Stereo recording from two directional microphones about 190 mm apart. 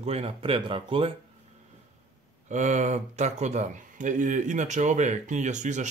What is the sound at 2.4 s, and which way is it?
Speech, 40° right (ahead or behind).